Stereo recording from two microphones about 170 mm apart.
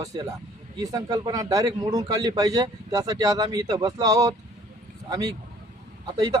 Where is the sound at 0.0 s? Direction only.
20° right (ahead or behind).